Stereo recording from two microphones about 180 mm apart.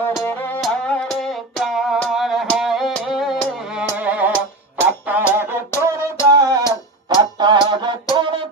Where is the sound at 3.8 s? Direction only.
10° right (ahead or behind).